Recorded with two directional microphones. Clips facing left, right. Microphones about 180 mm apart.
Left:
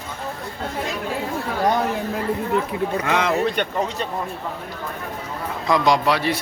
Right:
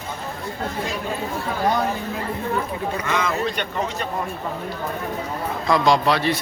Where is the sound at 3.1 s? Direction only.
70° left (ahead or behind).